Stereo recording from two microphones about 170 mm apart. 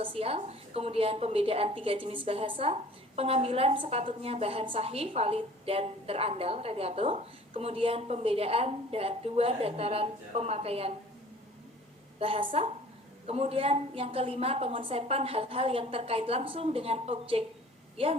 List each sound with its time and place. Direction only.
0.0 s a woman's voice: 35° right (ahead or behind)
12.2 s a woman's voice: 30° right (ahead or behind)